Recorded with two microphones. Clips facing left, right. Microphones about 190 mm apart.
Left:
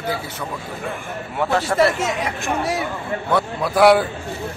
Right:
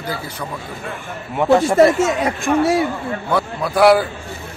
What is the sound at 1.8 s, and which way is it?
Speech, 45° right (ahead or behind).